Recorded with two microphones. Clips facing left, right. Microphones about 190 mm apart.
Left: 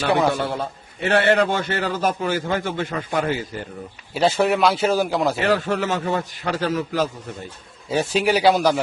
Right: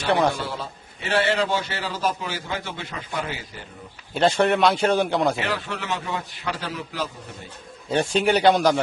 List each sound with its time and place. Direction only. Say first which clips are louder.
0.3 s a man's voice: left 6 dB; 60° left (ahead or behind)
4.1 s a man's voice: left 1 dB; 5° left (ahead or behind)
5.4 s a man's voice: left 8 dB; 45° left (ahead or behind)
7.9 s a man's voice: left 1 dB; 5° left (ahead or behind)